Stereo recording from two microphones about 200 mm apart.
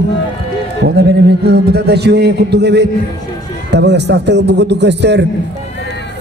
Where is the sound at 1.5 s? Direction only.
55° right (ahead or behind).